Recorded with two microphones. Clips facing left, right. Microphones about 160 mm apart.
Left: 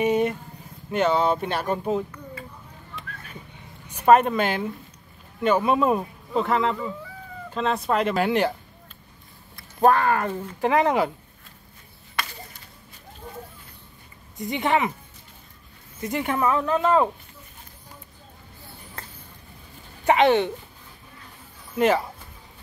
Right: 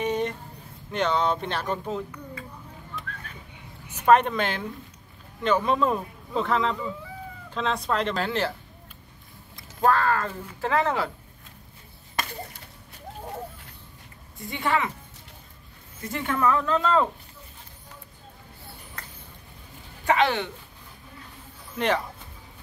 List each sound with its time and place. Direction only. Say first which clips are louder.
0.0 s a sound: left 5 dB; 10° left (ahead or behind)
0.9 s speech: left 3 dB; 5° left (ahead or behind)
4.1 s speech: left 2 dB; 5° left (ahead or behind)
9.8 s speech: left 3 dB; 20° left (ahead or behind)
12.2 s chop: right 1 dB; 45° right (ahead or behind)
14.4 s speech: left 3 dB; 20° left (ahead or behind)
16.0 s speech: left 2 dB; 20° left (ahead or behind)
19.0 s a sound: left 4 dB; 25° left (ahead or behind)
20.1 s speech: left 5 dB; 20° left (ahead or behind)
21.7 s speech: left 5 dB; 5° left (ahead or behind)